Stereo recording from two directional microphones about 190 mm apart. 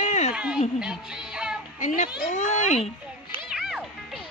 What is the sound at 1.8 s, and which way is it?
A child's voice, 40° left (ahead or behind).